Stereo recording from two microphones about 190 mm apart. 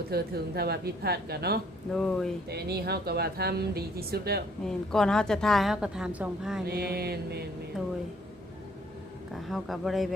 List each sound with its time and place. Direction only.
0.1 s speech: 55° right (ahead or behind)
1.9 s a woman's voice: 5° left (ahead or behind)
2.5 s speech: 60° right (ahead or behind)
4.6 s a woman's voice: 5° left (ahead or behind)
6.7 s speech: 55° right (ahead or behind)
9.3 s a woman's voice: centre (ahead or behind)